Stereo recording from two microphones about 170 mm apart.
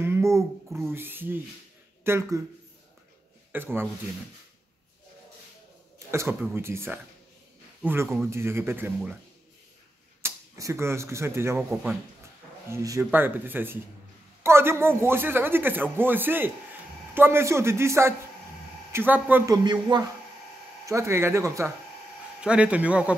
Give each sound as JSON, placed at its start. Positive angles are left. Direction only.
{"t": 0.0, "sound": "a sound", "side_deg": -15}
{"t": 0.8, "sound": "a man's voice", "side_deg": -10}
{"t": 3.5, "sound": "a man's voice", "side_deg": -10}
{"t": 6.1, "sound": "a man's voice", "side_deg": -15}
{"t": 10.2, "sound": "a man's voice", "side_deg": -15}
{"t": 12.6, "sound": "a man's voice", "side_deg": -15}
{"t": 19.5, "sound": "a man's voice", "side_deg": -25}
{"t": 22.4, "sound": "a man's voice", "side_deg": -5}